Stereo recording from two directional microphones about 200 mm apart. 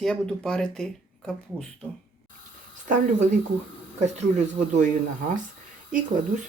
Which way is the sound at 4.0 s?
35° right (ahead or behind).